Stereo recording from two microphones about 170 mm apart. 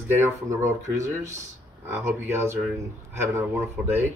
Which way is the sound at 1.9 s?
15° right (ahead or behind).